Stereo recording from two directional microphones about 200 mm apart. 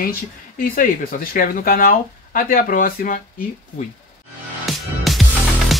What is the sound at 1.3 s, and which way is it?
Speech, 45° left (ahead or behind).